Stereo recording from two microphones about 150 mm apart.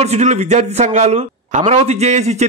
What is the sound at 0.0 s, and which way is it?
A man's voice, 50° right (ahead or behind).